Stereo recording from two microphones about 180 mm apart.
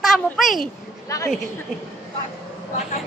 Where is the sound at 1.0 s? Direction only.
20° left (ahead or behind).